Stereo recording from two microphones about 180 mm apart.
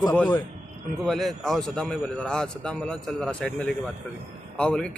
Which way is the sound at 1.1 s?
Centre (ahead or behind).